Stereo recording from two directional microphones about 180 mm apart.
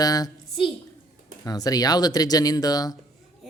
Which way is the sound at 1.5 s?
20° left (ahead or behind).